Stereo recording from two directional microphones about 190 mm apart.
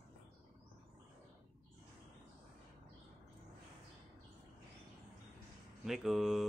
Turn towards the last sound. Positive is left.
turn(degrees=0)  # may be behind; listen again after turning